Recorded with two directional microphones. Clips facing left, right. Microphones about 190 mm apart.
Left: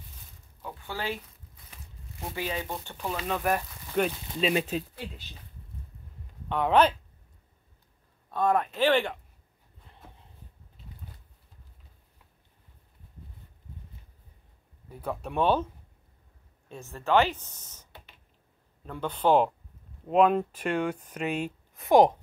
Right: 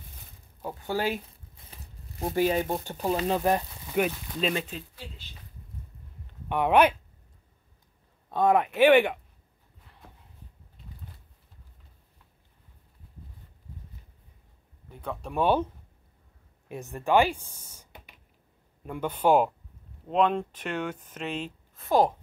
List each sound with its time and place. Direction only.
0.6 s speech: 40° right (ahead or behind); by 3.6 s 25° right (ahead or behind)
3.9 s speech: 5° right (ahead or behind)
4.6 s speech: 45° left (ahead or behind)
6.5 s speech: 15° right (ahead or behind)
8.3 s speech: 20° right (ahead or behind)
14.9 s speech: 5° left (ahead or behind)
15.4 s speech: 10° right (ahead or behind)
20.1 s speech: 5° left (ahead or behind)